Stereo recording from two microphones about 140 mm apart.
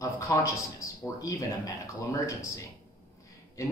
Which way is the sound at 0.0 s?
20° left (ahead or behind).